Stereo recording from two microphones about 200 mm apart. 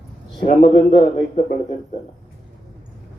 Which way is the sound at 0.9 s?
30° left (ahead or behind).